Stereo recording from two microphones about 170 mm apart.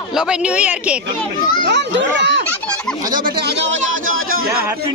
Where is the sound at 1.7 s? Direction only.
90° right.